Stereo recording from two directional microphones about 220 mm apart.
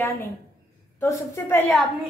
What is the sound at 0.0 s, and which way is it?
A woman's voice, 15° left (ahead or behind).